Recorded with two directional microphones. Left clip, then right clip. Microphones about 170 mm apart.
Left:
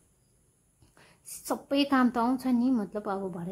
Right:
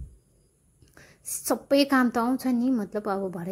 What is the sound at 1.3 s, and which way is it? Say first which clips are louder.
A woman's voice: right 7 dB; 20° right (ahead or behind).